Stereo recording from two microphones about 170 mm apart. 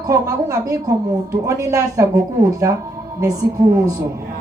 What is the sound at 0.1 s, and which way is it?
A woman's voice, 20° right (ahead or behind).